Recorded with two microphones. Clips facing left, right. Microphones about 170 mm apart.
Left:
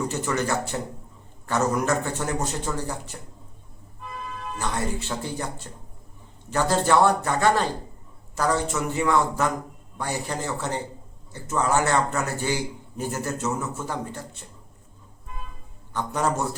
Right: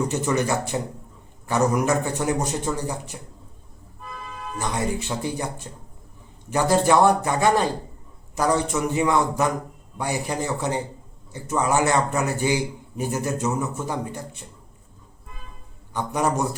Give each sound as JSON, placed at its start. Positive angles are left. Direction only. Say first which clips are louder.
{"t": 0.1, "sound": "a man's voice", "louder": "right 3 dB", "side_deg": -15}
{"t": 4.5, "sound": "a man's voice", "louder": "right 3 dB", "side_deg": -15}
{"t": 15.9, "sound": "a man's voice", "louder": "right 2 dB", "side_deg": -15}